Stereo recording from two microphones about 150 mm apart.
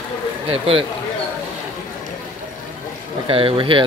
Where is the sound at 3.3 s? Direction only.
35° right (ahead or behind).